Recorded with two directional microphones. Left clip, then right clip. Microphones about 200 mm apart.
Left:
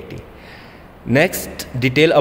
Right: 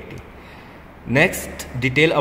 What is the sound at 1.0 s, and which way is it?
Speech, 50° left (ahead or behind).